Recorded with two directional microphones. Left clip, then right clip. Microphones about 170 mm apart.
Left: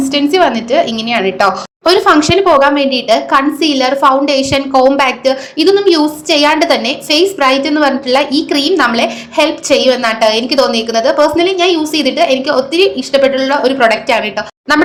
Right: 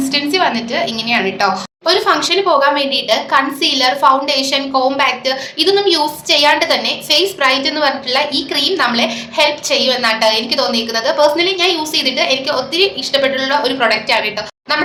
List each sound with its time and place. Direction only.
0.0 s a woman's voice: 45° left (ahead or behind)